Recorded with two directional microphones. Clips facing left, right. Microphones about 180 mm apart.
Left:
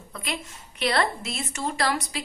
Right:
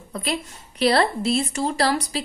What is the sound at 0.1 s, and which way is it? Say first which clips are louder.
A woman's voice: right 7 dB; 35° right (ahead or behind).